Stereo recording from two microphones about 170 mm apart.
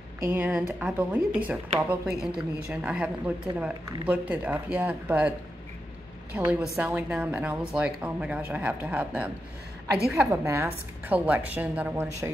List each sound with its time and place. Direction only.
0.3 s speech: 10° right (ahead or behind)
6.3 s a woman's voice: 10° right (ahead or behind)
10.4 s speech: 15° right (ahead or behind)